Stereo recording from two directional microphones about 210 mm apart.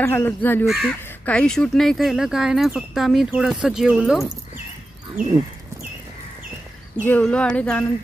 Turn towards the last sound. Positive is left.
turn(degrees=5)  # may be behind; listen again after turning